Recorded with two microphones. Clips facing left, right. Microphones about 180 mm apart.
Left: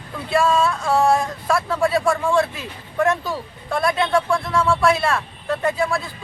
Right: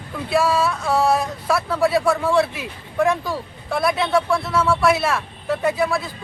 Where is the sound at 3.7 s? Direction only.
10° right (ahead or behind).